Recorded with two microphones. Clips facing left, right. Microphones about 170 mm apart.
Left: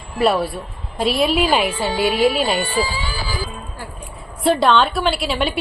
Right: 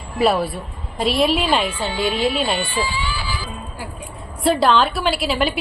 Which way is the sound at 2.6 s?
40° left (ahead or behind).